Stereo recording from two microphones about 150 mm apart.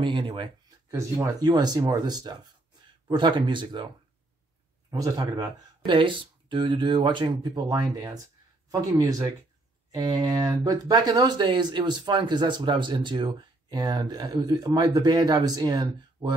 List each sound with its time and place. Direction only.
0.0 s speech: 35° right (ahead or behind)
0.9 s speech: 20° right (ahead or behind)
4.9 s speech: 25° right (ahead or behind)